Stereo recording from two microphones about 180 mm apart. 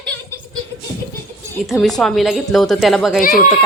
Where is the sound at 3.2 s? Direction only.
50° left (ahead or behind).